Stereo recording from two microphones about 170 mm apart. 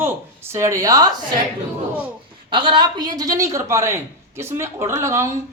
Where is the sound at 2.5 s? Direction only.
30° right (ahead or behind).